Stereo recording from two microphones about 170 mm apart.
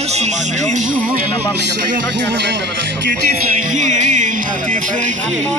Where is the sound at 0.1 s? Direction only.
40° right (ahead or behind).